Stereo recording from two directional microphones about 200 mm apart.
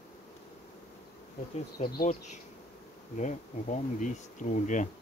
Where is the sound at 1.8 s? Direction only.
35° left (ahead or behind).